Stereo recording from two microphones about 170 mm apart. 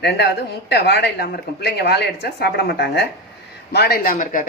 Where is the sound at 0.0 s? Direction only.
75° left (ahead or behind).